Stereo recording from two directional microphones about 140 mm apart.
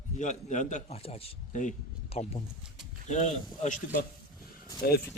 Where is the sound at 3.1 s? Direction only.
55° left (ahead or behind).